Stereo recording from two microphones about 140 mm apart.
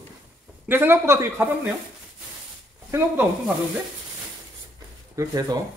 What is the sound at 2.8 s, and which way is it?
Speech, 15° right (ahead or behind).